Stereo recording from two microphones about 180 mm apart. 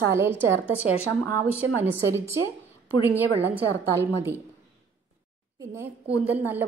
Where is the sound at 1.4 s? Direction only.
10° right (ahead or behind).